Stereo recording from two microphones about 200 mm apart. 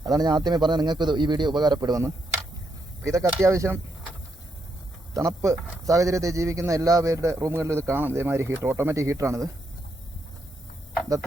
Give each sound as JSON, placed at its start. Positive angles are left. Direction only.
{"t": 0.0, "sound": "a man's voice", "side_deg": -20}
{"t": 5.1, "sound": "a man's voice", "side_deg": -15}